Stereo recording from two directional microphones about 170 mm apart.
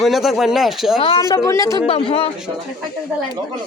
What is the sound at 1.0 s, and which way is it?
Speech, 30° left (ahead or behind).